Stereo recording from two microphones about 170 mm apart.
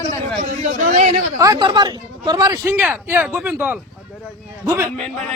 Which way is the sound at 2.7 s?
10° right (ahead or behind).